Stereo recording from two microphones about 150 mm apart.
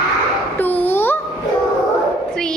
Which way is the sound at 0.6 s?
10° left (ahead or behind).